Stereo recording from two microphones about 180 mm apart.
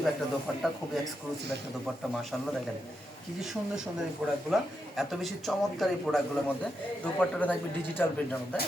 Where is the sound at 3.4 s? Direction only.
Centre (ahead or behind).